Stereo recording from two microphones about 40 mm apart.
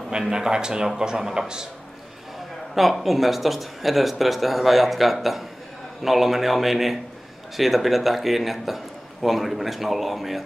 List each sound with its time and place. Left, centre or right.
0.3 s a man's voice: centre
2.7 s a man's voice: centre